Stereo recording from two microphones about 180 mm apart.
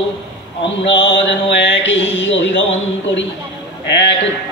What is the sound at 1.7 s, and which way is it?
Speech, 90° left.